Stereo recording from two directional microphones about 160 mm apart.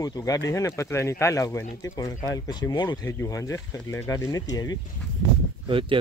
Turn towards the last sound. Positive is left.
turn(degrees=-30)  # may be behind; listen again after turning